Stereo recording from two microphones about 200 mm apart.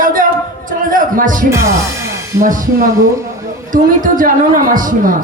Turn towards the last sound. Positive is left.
turn(degrees=-40)  # may be behind; listen again after turning